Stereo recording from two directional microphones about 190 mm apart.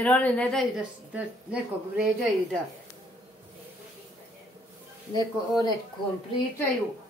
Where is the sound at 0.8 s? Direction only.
5° right (ahead or behind).